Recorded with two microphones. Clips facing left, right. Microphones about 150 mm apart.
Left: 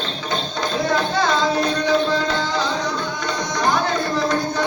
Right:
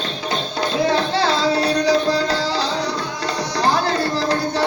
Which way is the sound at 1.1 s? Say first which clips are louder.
Right 1 dB; 30° right (ahead or behind).